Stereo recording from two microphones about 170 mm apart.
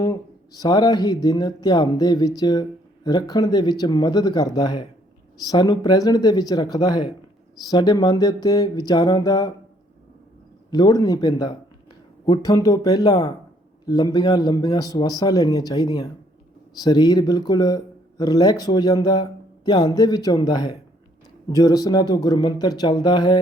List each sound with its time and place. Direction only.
0.0 s speech: 20° left (ahead or behind)
10.7 s speech: 25° left (ahead or behind)